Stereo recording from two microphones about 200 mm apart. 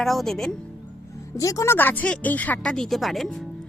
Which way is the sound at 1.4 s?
15° left (ahead or behind).